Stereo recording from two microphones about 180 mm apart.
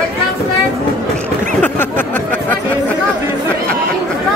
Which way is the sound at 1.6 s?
10° left (ahead or behind).